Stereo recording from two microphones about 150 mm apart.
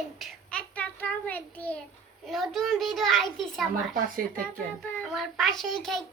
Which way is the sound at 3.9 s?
65° right (ahead or behind).